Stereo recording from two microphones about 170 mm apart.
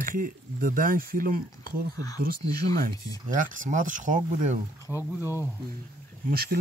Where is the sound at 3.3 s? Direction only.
50° right (ahead or behind).